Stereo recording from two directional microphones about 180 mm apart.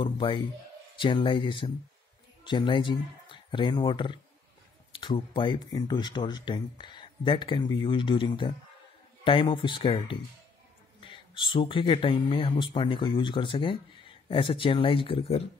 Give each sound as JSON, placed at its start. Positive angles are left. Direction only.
{"t": 0.0, "sound": "speech", "side_deg": 25}